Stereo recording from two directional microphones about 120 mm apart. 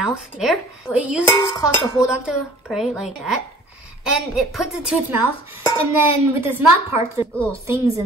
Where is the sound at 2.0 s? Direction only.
5° right (ahead or behind).